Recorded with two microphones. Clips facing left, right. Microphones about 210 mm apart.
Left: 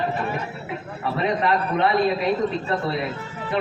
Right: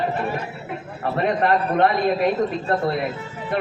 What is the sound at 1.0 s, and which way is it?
A man's voice, 50° right (ahead or behind).